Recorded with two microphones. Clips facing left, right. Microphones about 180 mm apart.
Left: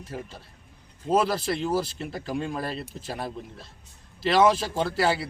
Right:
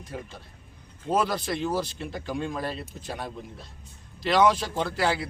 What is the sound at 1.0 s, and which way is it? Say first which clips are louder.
Speech: left 2 dB; 5° left (ahead or behind).